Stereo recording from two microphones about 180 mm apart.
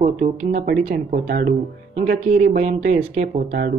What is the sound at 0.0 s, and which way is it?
Speech, 45° right (ahead or behind).